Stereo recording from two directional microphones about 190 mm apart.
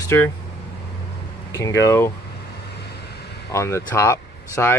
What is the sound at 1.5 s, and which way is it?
Speech, 15° left (ahead or behind).